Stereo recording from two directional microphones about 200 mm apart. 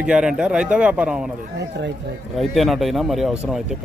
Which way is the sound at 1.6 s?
60° right (ahead or behind).